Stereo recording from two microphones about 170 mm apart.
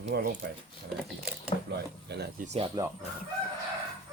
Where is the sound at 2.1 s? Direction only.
75° right (ahead or behind).